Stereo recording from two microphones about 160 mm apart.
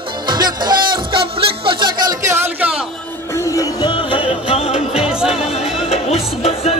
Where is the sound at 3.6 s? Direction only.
30° left (ahead or behind).